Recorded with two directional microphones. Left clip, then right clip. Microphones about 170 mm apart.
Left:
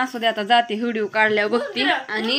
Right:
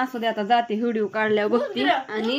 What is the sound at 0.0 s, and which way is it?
Speech, 15° right (ahead or behind).